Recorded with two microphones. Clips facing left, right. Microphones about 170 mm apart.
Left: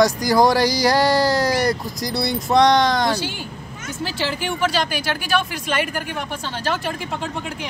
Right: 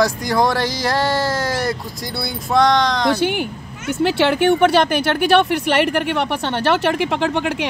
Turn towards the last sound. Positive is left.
turn(degrees=-85)